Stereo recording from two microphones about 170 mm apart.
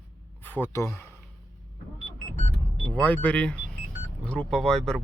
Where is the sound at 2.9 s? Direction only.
10° left (ahead or behind).